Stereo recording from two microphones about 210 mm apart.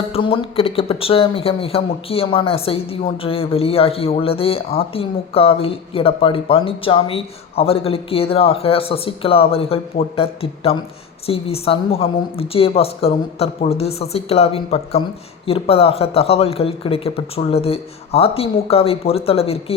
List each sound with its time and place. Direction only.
0.1 s speech: 25° left (ahead or behind)